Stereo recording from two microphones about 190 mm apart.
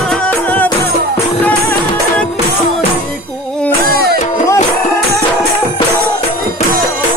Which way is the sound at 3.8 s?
55° right (ahead or behind).